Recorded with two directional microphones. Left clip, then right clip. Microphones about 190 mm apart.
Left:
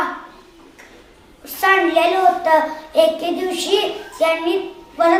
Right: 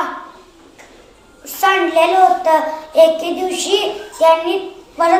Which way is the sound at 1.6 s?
15° left (ahead or behind).